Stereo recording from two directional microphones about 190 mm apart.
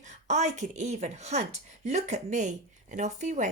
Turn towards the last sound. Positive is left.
turn(degrees=-40)  # may be behind; listen again after turning